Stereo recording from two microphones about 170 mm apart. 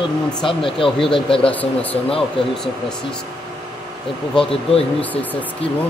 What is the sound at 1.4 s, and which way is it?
Speech, 10° left (ahead or behind).